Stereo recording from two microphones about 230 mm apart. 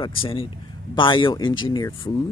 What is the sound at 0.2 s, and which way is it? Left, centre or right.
Speech, left.